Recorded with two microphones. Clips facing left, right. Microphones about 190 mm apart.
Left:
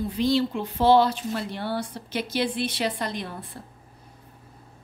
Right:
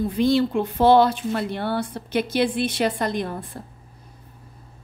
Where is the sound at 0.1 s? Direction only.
55° right (ahead or behind).